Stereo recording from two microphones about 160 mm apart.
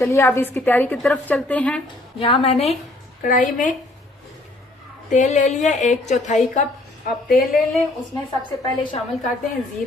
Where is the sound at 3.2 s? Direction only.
60° left (ahead or behind).